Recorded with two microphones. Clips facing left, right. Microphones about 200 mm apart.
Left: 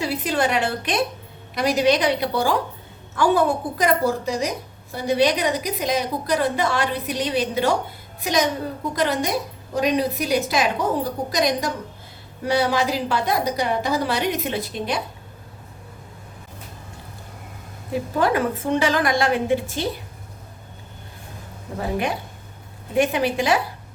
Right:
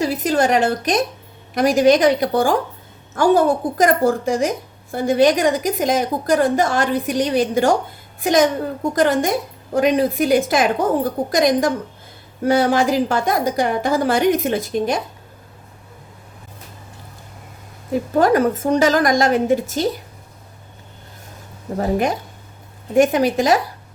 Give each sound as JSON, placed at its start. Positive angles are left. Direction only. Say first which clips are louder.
{"t": 0.0, "sound": "a woman's voice", "louder": "right 5 dB", "side_deg": -40}
{"t": 18.2, "sound": "a woman's voice", "louder": "right 6 dB", "side_deg": -45}
{"t": 21.8, "sound": "a woman's voice", "louder": "right 5 dB", "side_deg": -45}